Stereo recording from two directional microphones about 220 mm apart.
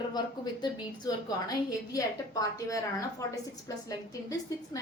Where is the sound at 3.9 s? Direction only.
15° left (ahead or behind).